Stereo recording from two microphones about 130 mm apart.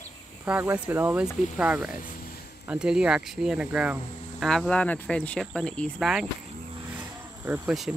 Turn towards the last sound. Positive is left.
turn(degrees=-5)  # may be behind; listen again after turning